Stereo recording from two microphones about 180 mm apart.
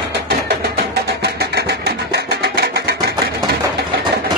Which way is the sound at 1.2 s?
60° right (ahead or behind).